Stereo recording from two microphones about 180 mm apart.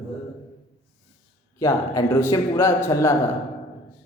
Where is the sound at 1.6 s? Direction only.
15° left (ahead or behind).